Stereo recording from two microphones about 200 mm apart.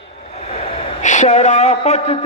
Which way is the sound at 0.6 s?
35° left (ahead or behind).